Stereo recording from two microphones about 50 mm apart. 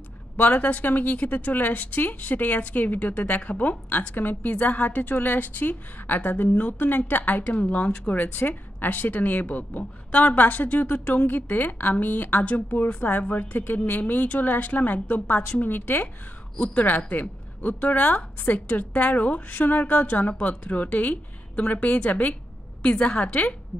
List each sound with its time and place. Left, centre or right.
0.4 s a woman's voice: left
16.5 s a woman's voice: left
16.8 s a woman's voice: left